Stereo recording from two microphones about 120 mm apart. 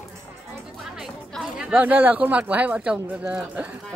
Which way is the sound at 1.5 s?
10° right (ahead or behind).